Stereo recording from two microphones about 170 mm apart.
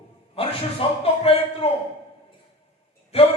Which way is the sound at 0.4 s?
35° left (ahead or behind).